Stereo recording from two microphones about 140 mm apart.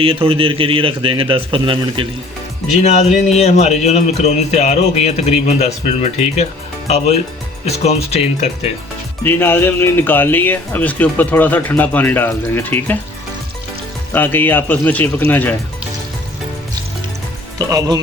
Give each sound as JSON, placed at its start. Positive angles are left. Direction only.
{"t": 0.0, "sound": "a man's voice", "side_deg": -40}
{"t": 2.8, "sound": "speech", "side_deg": 55}
{"t": 9.2, "sound": "speech", "side_deg": 15}
{"t": 14.1, "sound": "speech", "side_deg": 15}
{"t": 17.6, "sound": "speech", "side_deg": -25}